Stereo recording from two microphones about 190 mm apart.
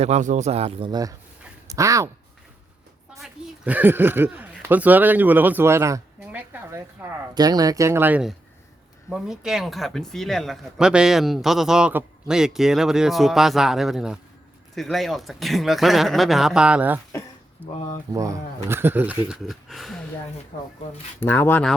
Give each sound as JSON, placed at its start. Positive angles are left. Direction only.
{"t": 0.0, "sound": "speech", "side_deg": -40}
{"t": 3.2, "sound": "a man's voice", "side_deg": -5}
{"t": 20.5, "sound": "speech", "side_deg": 50}
{"t": 21.2, "sound": "speech", "side_deg": 10}